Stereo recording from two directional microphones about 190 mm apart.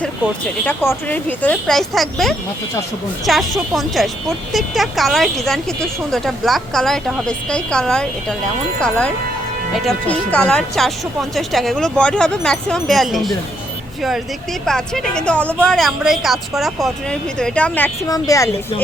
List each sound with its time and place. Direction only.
0.6 s speech: 10° left (ahead or behind)
14.6 s speech: centre (ahead or behind)